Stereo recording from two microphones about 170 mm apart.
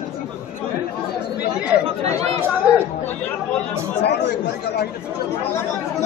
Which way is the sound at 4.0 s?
85° left.